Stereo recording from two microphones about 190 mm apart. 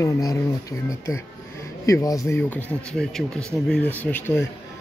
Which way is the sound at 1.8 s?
15° left (ahead or behind).